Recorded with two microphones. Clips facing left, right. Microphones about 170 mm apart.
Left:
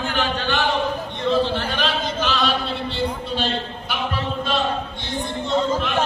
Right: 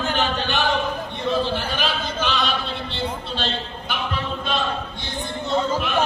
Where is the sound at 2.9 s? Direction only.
10° left (ahead or behind).